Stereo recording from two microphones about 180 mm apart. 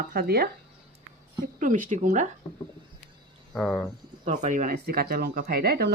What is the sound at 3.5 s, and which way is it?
Speech, 5° left (ahead or behind).